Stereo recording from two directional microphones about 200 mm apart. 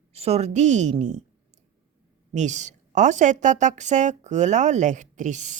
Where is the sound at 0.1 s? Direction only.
30° right (ahead or behind).